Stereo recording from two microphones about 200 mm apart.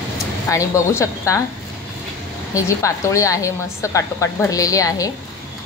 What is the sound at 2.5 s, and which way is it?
A woman's voice, 15° left (ahead or behind).